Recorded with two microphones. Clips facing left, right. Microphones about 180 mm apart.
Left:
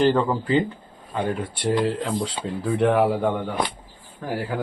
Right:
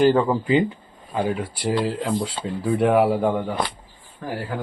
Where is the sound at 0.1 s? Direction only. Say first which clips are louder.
Right 2 dB; 15° right (ahead or behind).